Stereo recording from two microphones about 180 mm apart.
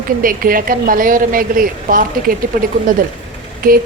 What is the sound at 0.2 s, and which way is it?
A woman's voice, 50° right (ahead or behind).